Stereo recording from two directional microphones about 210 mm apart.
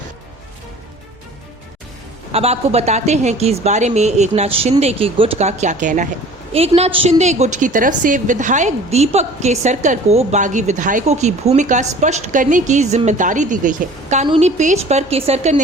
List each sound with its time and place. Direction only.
2.3 s a woman's voice: 30° right (ahead or behind)